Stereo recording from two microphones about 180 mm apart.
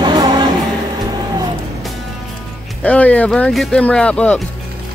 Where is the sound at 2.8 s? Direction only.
10° left (ahead or behind).